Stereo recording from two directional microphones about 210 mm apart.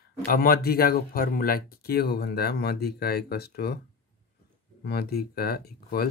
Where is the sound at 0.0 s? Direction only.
45° left (ahead or behind).